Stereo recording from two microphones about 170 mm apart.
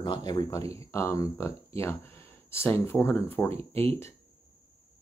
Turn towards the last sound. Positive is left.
turn(degrees=15)  # may be behind; listen again after turning